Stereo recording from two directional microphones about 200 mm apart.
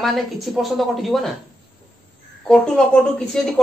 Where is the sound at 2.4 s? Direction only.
5° left (ahead or behind).